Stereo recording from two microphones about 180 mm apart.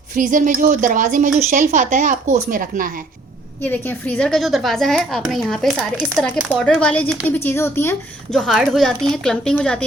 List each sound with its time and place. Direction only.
0.1 s speech: 45° right (ahead or behind)
3.6 s a woman's voice: 10° left (ahead or behind)
8.4 s a woman's voice: centre (ahead or behind)